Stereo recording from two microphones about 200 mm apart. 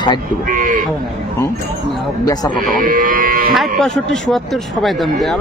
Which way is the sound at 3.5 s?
Centre (ahead or behind).